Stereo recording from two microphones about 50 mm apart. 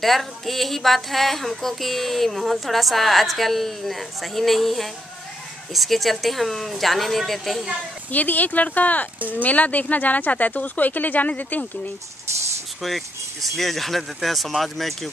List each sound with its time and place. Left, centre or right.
0.0 s speech: centre
8.1 s speech: left
12.8 s speech: centre